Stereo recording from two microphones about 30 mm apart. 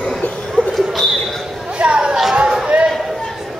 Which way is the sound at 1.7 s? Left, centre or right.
Right.